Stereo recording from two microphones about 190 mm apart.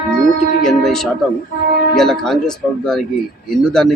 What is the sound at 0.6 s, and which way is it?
A man's voice, centre (ahead or behind).